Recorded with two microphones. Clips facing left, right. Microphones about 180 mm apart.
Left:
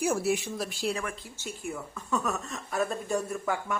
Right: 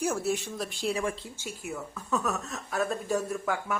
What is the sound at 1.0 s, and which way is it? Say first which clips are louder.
Speech: right 5 dB; 30° right (ahead or behind).